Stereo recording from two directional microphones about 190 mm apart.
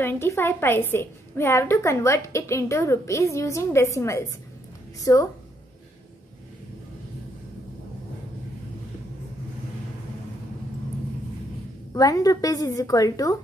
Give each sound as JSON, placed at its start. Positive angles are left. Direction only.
{"t": 0.0, "sound": "a woman's voice", "side_deg": 10}
{"t": 11.9, "sound": "a woman's voice", "side_deg": 20}